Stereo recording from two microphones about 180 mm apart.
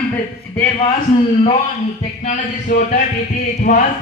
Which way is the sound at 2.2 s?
45° left (ahead or behind).